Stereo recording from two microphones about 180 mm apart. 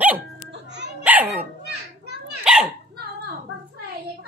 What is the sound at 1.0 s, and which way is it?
Dog, 10° right (ahead or behind).